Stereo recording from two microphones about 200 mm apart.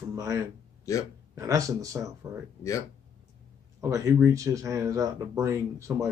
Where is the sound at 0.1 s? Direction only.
15° right (ahead or behind).